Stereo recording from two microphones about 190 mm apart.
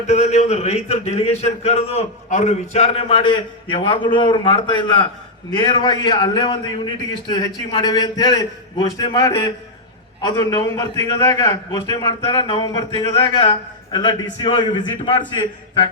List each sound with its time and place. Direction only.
0.1 s a man's voice: 35° left (ahead or behind)